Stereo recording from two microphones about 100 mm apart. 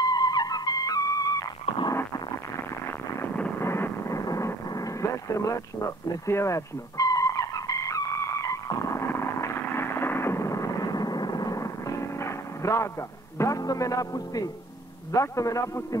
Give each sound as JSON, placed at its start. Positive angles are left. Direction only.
{"t": 0.0, "sound": "music", "side_deg": 40}
{"t": 3.5, "sound": "vehicle", "side_deg": 25}
{"t": 13.4, "sound": "speech", "side_deg": 35}